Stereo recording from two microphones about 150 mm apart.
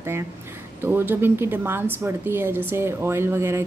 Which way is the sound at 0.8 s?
15° right (ahead or behind).